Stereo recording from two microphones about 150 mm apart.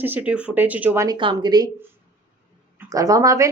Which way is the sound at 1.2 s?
30° right (ahead or behind).